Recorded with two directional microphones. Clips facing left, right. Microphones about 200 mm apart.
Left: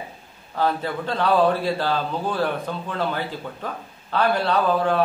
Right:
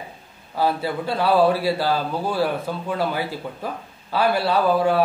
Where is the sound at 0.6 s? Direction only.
10° right (ahead or behind).